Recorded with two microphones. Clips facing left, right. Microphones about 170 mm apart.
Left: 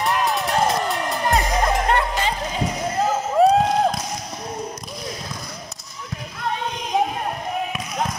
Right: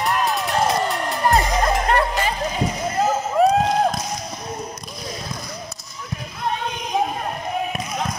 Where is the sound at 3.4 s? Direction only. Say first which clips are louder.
Left 1 dB; 30° left (ahead or behind).